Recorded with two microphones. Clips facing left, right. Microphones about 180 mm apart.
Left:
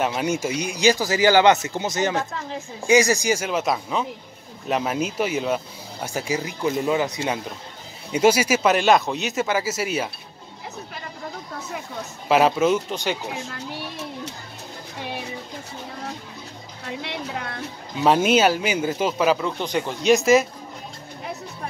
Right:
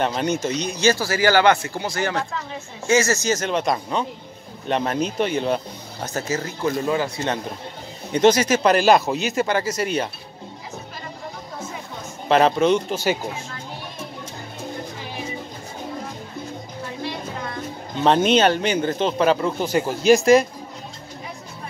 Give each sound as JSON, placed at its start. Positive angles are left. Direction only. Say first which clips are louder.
{"t": 0.0, "sound": "speech", "louder": "right 1 dB", "side_deg": 5}
{"t": 12.3, "sound": "speech", "louder": "right 1 dB", "side_deg": 5}
{"t": 12.9, "sound": "speech", "louder": "right 3 dB", "side_deg": -5}
{"t": 16.8, "sound": "a sound", "louder": "even", "side_deg": 65}
{"t": 17.9, "sound": "speech", "louder": "right 1 dB", "side_deg": 5}